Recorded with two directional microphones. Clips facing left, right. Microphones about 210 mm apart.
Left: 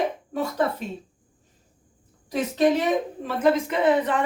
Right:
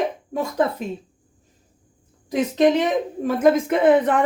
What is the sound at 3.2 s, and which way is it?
Speech, 45° right (ahead or behind).